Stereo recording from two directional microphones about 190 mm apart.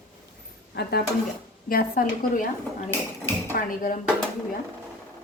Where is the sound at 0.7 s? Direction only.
55° left (ahead or behind).